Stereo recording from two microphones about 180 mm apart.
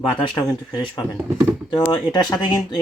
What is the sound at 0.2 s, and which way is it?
Speech, 25° left (ahead or behind).